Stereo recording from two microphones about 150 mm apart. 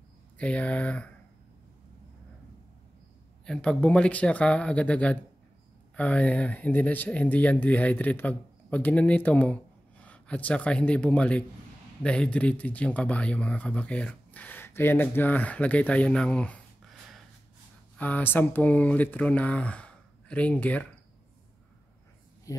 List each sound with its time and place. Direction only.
0.4 s speech: 10° left (ahead or behind)
3.4 s speech: 5° left (ahead or behind)
17.9 s speech: 10° left (ahead or behind)
22.5 s speech: 20° left (ahead or behind)